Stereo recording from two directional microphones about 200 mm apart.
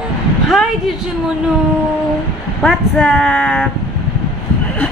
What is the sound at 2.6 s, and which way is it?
Speech, centre (ahead or behind).